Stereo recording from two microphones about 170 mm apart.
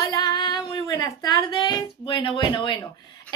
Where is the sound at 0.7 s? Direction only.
20° left (ahead or behind).